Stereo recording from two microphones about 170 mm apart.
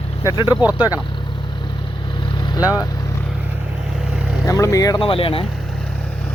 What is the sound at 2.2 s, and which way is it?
Vehicle, 25° left (ahead or behind).